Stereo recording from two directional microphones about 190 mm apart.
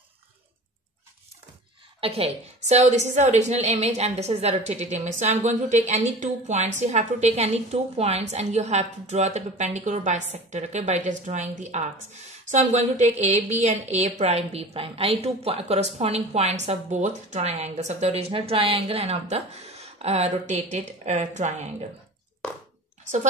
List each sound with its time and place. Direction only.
2.0 s a woman's voice: 30° right (ahead or behind)